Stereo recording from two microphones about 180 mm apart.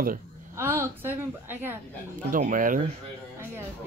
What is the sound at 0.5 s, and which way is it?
A woman's voice, 15° right (ahead or behind).